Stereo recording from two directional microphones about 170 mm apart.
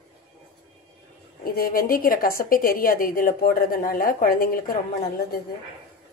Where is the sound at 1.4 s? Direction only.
60° left (ahead or behind).